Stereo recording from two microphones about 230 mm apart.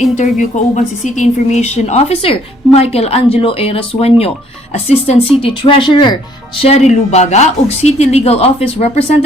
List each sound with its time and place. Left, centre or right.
0.0 s speech: left